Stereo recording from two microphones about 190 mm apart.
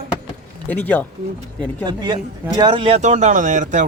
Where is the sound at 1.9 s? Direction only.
25° right (ahead or behind).